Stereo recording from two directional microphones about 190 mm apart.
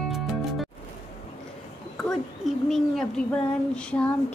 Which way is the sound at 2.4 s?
Centre (ahead or behind).